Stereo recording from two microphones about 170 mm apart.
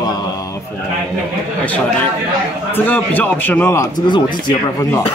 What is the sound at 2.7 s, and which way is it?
A man's voice, 10° left (ahead or behind).